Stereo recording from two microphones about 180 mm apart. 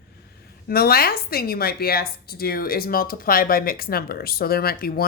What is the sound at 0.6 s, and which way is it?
A woman's voice, 60° left (ahead or behind).